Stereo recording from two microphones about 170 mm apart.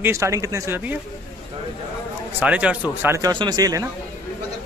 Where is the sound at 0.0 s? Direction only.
15° right (ahead or behind).